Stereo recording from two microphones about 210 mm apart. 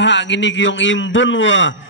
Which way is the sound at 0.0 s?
60° left (ahead or behind).